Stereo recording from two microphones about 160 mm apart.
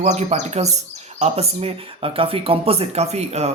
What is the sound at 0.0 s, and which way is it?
Speech, 45° right (ahead or behind).